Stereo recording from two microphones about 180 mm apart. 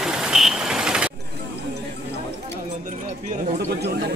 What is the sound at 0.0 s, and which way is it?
Vehicle, centre (ahead or behind).